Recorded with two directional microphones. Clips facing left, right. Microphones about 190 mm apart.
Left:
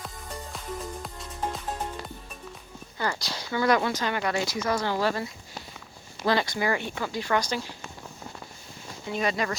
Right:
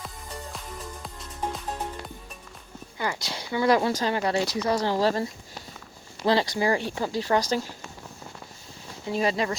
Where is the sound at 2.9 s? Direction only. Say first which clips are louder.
Even; 15° right (ahead or behind); by 5.2 s 35° right (ahead or behind).